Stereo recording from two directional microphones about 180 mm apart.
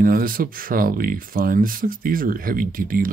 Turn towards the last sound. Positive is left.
turn(degrees=-50)  # may be behind; listen again after turning